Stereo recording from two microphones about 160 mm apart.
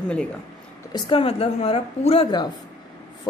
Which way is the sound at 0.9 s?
35° left (ahead or behind).